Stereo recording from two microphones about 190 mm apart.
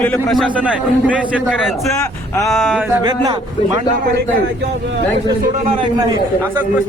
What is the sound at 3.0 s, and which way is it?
Speech, 20° right (ahead or behind).